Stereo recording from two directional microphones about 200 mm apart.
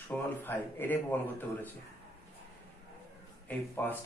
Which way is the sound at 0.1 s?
10° left (ahead or behind).